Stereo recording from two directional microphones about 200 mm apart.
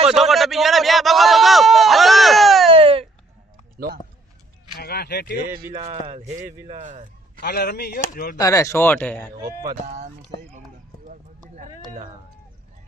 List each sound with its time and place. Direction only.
0.1 s a sound: centre (ahead or behind)
2.6 s baby cry: 30° right (ahead or behind)
4.8 s a sound: 50° left (ahead or behind)
5.7 s a man's voice: 30° right (ahead or behind)
7.4 s speech: 55° left (ahead or behind)
8.4 s speech: 15° left (ahead or behind)
9.8 s speech: 35° right (ahead or behind)
11.9 s speech: 30° right (ahead or behind)